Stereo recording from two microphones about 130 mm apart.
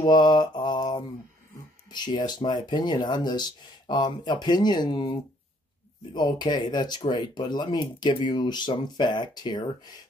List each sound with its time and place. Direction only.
0.0 s mantra: 35° left (ahead or behind)
1.9 s speech: 35° left (ahead or behind)
6.1 s speech: 35° left (ahead or behind)